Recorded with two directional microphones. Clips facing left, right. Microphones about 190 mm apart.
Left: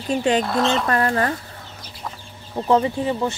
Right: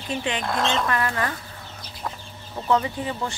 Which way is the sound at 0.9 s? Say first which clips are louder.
Left 5 dB; 40° left (ahead or behind).